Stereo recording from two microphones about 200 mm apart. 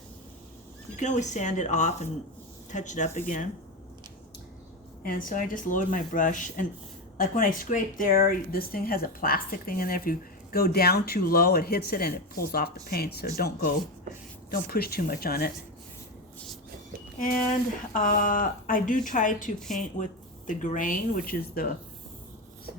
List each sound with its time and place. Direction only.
0.9 s speech: 35° left (ahead or behind)
5.0 s speech: 45° left (ahead or behind)
17.9 s speech: 40° left (ahead or behind)